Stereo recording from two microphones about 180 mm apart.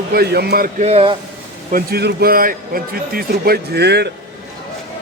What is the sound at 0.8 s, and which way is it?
Speech, 35° right (ahead or behind).